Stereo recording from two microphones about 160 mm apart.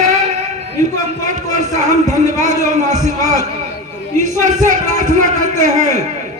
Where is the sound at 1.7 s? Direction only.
45° right (ahead or behind).